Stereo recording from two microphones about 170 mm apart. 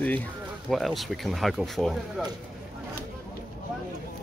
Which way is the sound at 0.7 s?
Centre (ahead or behind).